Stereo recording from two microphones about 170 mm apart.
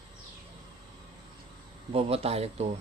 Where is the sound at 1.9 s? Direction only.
35° right (ahead or behind).